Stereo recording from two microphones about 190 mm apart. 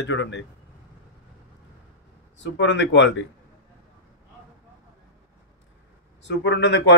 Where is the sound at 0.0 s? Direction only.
75° left (ahead or behind).